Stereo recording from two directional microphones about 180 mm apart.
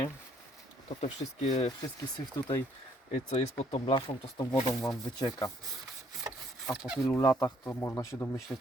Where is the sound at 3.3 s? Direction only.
30° left (ahead or behind).